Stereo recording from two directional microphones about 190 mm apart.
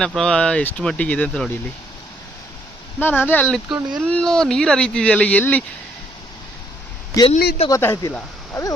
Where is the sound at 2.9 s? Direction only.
10° left (ahead or behind).